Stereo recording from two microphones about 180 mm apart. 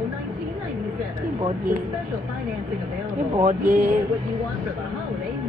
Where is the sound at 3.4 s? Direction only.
50° right (ahead or behind).